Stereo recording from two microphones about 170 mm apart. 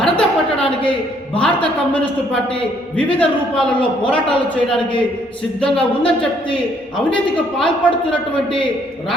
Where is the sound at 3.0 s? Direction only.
5° left (ahead or behind).